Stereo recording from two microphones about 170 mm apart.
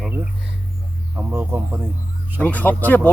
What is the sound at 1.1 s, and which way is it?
Speech, 15° right (ahead or behind).